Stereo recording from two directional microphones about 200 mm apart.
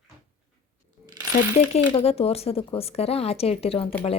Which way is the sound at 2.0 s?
30° left (ahead or behind).